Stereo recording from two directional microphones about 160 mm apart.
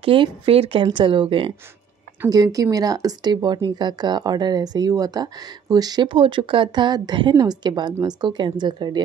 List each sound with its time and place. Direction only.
0.0 s speech: 35° right (ahead or behind)